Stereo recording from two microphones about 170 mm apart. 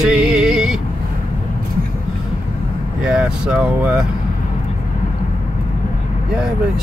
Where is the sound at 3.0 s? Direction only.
5° right (ahead or behind).